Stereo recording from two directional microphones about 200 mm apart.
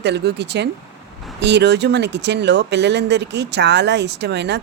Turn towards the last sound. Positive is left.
turn(degrees=-60)  # may be behind; listen again after turning